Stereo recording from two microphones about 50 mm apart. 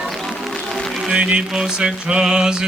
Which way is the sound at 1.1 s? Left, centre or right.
Right.